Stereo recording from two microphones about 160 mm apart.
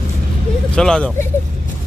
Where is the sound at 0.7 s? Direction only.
5° left (ahead or behind).